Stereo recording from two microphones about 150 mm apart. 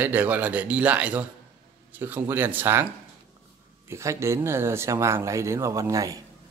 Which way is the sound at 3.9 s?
20° right (ahead or behind).